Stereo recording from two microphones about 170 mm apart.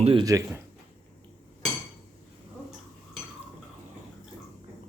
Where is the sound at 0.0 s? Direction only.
30° right (ahead or behind).